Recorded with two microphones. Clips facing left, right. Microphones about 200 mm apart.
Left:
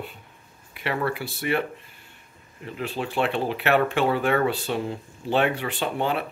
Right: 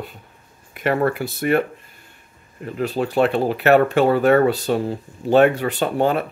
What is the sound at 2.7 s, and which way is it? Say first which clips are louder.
Speech: right 7 dB; 40° right (ahead or behind).